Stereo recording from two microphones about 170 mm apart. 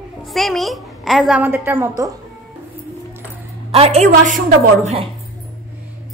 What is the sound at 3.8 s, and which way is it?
A woman's voice, 40° right (ahead or behind).